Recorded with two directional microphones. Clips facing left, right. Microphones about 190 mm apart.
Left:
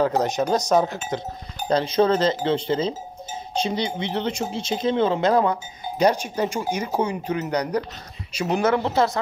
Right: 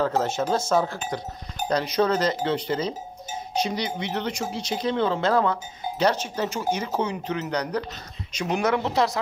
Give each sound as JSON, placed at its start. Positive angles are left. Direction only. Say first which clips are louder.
{"t": 0.0, "sound": "speech", "louder": "left 3 dB", "side_deg": 15}